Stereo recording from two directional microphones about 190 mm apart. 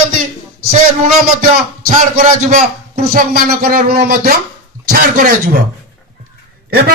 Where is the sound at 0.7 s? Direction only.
45° right (ahead or behind).